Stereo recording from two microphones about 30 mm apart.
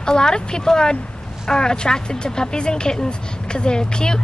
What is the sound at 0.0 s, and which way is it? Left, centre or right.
A woman's voice, left.